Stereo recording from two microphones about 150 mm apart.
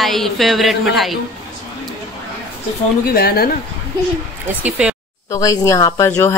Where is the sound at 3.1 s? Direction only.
90° left.